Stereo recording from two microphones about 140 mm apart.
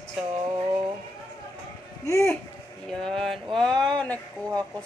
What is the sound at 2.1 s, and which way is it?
Speech, 20° left (ahead or behind).